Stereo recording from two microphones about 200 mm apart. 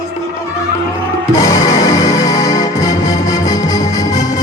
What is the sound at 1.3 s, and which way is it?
Music, 15° left (ahead or behind).